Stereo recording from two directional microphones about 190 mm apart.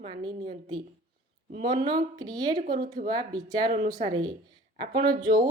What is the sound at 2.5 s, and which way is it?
Speech, 45° right (ahead or behind).